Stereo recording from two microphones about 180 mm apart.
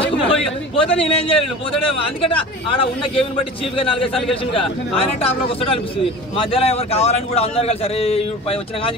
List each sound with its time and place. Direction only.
0.3 s a man's voice: 30° left (ahead or behind)